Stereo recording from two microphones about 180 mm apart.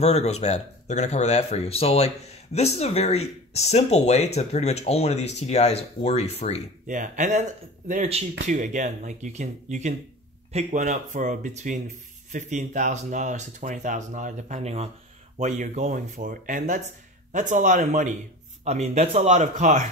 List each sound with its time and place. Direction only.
0.0 s speech: 35° left (ahead or behind)
6.9 s speech: 45° right (ahead or behind)